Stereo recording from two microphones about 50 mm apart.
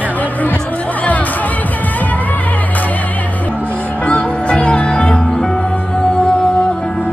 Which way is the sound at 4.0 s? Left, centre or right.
Left.